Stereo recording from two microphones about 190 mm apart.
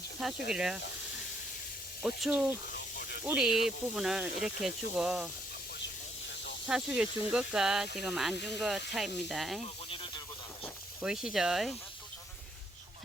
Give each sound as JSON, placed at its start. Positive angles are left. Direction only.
{"t": 0.2, "sound": "speech", "side_deg": 0}
{"t": 2.0, "sound": "speech", "side_deg": 0}
{"t": 2.7, "sound": "snake", "side_deg": 50}
{"t": 3.2, "sound": "speech", "side_deg": -5}
{"t": 6.7, "sound": "speech", "side_deg": -5}
{"t": 11.0, "sound": "speech", "side_deg": -5}